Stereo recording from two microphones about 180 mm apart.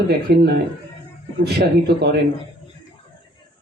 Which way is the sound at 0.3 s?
65° right (ahead or behind).